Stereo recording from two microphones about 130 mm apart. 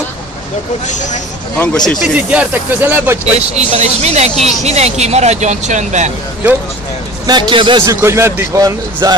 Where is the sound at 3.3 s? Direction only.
55° right (ahead or behind).